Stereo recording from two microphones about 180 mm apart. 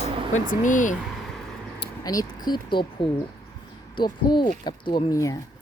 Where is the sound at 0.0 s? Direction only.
45° left (ahead or behind).